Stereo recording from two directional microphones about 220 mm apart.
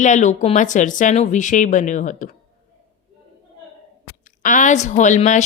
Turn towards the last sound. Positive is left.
turn(degrees=35)  # may be behind; listen again after turning